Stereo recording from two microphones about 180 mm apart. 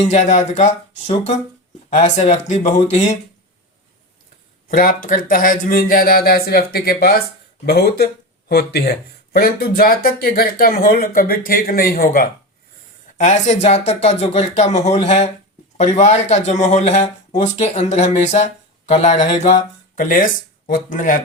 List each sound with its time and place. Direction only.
0.0 s speech: 40° left (ahead or behind)
4.7 s speech: 50° left (ahead or behind)
13.1 s speech: 40° left (ahead or behind)
20.0 s speech: 50° left (ahead or behind)